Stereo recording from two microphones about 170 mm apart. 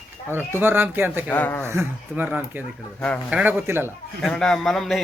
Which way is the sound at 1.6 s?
15° right (ahead or behind).